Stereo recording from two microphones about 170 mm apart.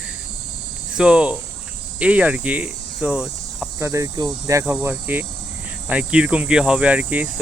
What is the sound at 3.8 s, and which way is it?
Speech, 20° right (ahead or behind).